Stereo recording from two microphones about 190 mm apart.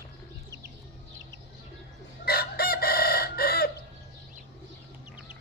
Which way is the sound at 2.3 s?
55° left (ahead or behind).